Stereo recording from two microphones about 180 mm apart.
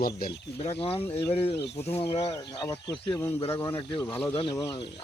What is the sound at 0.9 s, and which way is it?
Speech, 15° left (ahead or behind).